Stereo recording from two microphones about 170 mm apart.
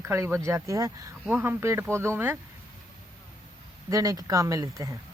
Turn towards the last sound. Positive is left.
turn(degrees=-20)  # may be behind; listen again after turning